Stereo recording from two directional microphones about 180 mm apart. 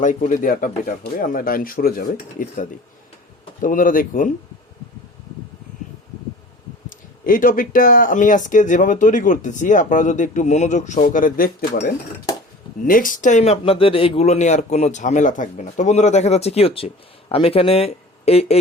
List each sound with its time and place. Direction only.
0.0 s speech: 45° left (ahead or behind)
6.9 s speech: 50° left (ahead or behind)